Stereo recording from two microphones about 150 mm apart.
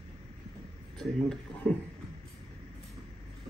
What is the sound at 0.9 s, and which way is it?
Speech, 5° left (ahead or behind).